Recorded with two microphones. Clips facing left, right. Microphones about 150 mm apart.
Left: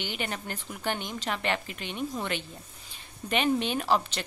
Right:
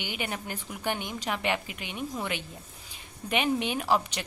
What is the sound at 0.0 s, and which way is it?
Speech, 10° right (ahead or behind).